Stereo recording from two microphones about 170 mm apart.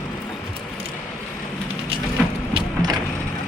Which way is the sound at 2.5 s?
25° right (ahead or behind).